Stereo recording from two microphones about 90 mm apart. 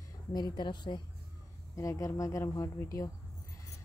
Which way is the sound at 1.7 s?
35° left (ahead or behind).